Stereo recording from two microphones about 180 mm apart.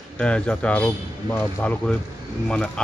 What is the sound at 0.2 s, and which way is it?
Speech, 5° left (ahead or behind).